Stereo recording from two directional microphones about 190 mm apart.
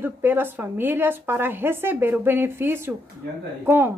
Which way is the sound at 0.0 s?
10° right (ahead or behind).